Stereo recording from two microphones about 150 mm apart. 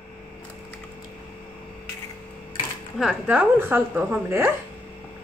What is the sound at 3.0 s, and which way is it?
A woman's voice, 5° right (ahead or behind).